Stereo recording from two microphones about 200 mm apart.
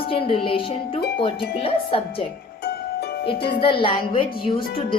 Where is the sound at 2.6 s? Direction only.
50° left (ahead or behind).